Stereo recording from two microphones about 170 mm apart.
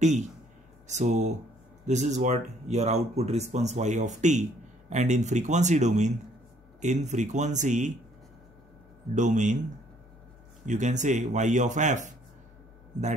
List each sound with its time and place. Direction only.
0.8 s speech: 45° right (ahead or behind)
9.1 s speech: 45° right (ahead or behind)
10.6 s speech: 45° right (ahead or behind)